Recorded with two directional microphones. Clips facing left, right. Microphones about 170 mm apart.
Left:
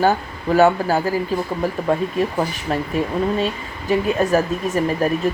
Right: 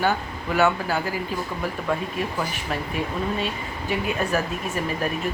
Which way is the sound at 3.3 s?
40° left (ahead or behind).